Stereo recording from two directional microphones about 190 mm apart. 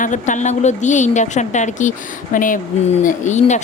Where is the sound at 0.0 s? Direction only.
40° left (ahead or behind).